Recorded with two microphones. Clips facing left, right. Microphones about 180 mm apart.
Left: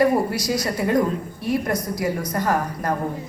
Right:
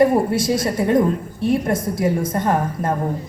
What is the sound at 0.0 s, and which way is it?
A woman's voice, 25° right (ahead or behind).